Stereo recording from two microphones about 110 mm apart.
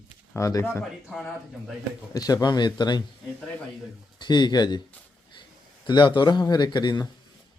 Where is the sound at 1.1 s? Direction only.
5° left (ahead or behind).